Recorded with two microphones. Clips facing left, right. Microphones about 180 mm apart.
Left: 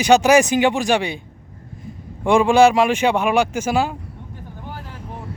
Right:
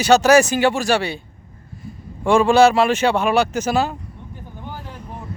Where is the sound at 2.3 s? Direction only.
15° left (ahead or behind).